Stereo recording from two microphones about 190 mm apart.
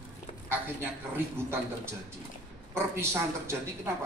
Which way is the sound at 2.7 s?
15° right (ahead or behind).